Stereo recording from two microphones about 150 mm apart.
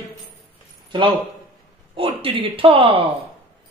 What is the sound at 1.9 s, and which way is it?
Speech, 35° right (ahead or behind).